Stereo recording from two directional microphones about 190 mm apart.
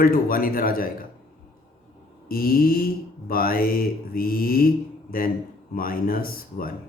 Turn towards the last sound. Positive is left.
turn(degrees=50)  # may be behind; listen again after turning